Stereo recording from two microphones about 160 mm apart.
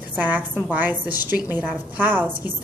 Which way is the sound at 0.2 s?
10° right (ahead or behind).